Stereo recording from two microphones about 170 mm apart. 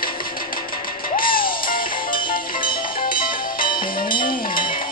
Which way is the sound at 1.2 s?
60° left (ahead or behind).